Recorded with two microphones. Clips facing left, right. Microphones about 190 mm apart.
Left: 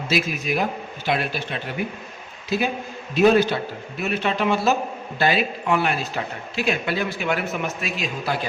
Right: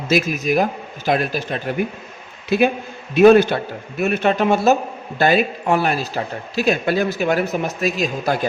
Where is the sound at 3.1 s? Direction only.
55° right (ahead or behind).